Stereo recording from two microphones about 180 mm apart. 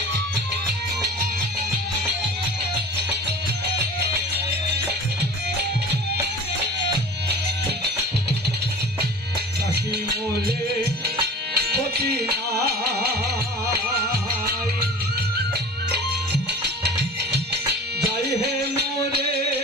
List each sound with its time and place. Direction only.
11.5 s music: 65° right (ahead or behind)
15.9 s music: 65° right (ahead or behind)